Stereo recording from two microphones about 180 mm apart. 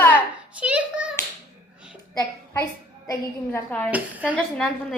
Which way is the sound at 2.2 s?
20° left (ahead or behind).